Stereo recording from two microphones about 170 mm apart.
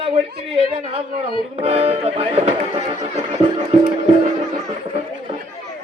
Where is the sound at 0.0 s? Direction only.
35° right (ahead or behind).